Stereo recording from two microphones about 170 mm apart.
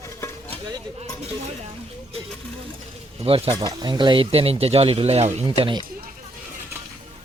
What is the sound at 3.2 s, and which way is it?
Speech, 35° right (ahead or behind).